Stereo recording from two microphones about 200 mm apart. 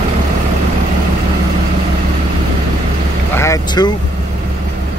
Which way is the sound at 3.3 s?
15° left (ahead or behind).